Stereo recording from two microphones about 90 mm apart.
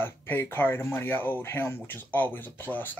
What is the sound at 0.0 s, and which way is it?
Speech, 25° left (ahead or behind).